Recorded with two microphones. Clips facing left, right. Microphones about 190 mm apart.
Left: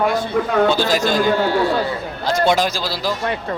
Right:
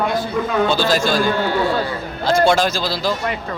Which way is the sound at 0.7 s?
15° left (ahead or behind).